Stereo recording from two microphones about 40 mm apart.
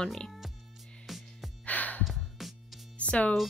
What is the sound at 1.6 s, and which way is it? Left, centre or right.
Music, left.